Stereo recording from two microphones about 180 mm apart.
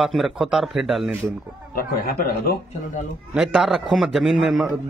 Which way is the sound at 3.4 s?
Centre (ahead or behind).